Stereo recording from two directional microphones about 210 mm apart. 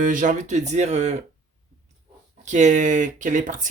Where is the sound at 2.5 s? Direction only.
35° right (ahead or behind).